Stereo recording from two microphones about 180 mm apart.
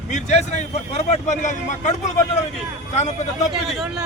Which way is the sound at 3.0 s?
40° left (ahead or behind).